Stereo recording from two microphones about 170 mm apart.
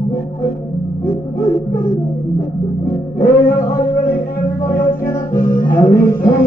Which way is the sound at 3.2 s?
50° left (ahead or behind).